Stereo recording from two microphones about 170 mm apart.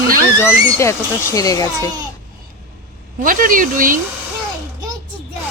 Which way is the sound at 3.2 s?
55° right (ahead or behind).